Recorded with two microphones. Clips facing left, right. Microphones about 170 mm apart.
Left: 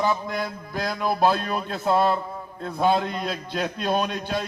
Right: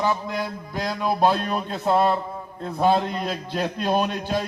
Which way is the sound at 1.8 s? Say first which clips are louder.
Right 1 dB; centre (ahead or behind).